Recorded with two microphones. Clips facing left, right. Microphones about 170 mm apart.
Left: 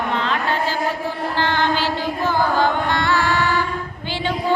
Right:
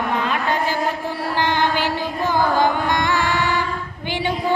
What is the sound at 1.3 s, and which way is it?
Carnatic music, 15° right (ahead or behind).